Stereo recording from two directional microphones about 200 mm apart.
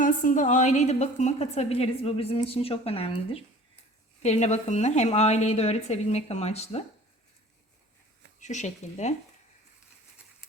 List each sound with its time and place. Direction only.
0.0 s a woman's voice: 40° left (ahead or behind)
8.4 s a woman's voice: 35° left (ahead or behind)